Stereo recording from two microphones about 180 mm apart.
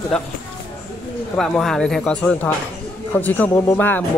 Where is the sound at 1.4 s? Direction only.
Centre (ahead or behind).